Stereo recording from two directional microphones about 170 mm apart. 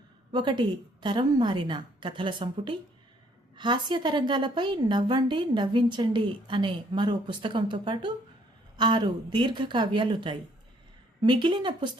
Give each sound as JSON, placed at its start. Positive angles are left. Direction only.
{"t": 0.3, "sound": "a woman's voice", "side_deg": -25}